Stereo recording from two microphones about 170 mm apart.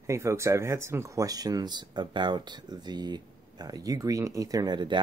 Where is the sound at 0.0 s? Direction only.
15° right (ahead or behind).